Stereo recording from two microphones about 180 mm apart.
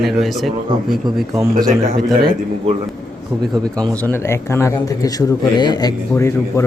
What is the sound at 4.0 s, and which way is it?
A man's voice, 15° left (ahead or behind).